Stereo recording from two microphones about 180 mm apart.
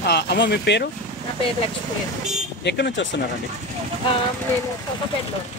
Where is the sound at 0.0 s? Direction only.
65° left (ahead or behind).